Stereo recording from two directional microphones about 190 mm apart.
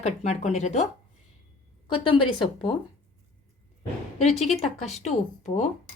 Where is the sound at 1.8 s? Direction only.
25° left (ahead or behind).